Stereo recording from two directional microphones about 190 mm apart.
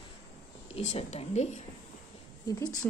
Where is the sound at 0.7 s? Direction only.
35° left (ahead or behind).